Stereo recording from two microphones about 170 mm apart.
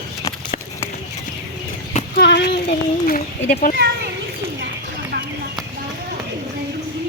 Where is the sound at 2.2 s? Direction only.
75° left (ahead or behind).